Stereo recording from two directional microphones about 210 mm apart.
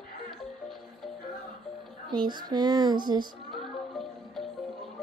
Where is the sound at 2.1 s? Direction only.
20° right (ahead or behind).